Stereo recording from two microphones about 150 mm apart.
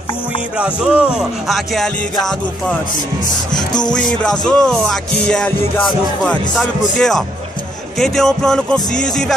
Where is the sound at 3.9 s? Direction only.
5° left (ahead or behind).